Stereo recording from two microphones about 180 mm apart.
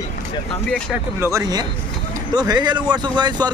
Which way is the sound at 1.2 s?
20° right (ahead or behind).